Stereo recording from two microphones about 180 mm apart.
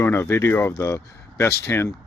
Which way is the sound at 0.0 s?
15° left (ahead or behind).